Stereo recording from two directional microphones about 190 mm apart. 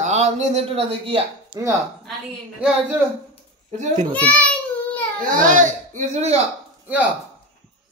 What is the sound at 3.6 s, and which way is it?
Speech, 40° right (ahead or behind).